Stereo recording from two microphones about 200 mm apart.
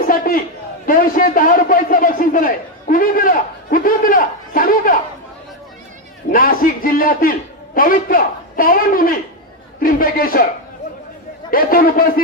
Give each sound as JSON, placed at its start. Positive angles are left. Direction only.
{"t": 0.0, "sound": "a sound", "side_deg": 45}
{"t": 0.8, "sound": "a man's voice", "side_deg": 45}
{"t": 6.3, "sound": "a man's voice", "side_deg": 45}
{"t": 11.5, "sound": "a man's voice", "side_deg": 45}